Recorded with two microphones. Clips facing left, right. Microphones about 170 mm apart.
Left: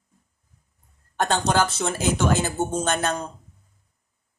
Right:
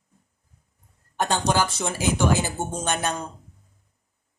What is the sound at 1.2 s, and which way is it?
Speech, 10° right (ahead or behind).